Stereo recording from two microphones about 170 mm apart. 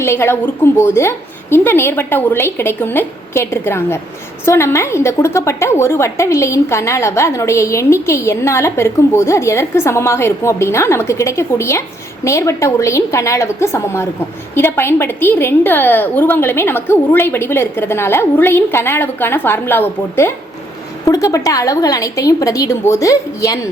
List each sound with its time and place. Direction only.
0.0 s a woman's voice: 15° left (ahead or behind)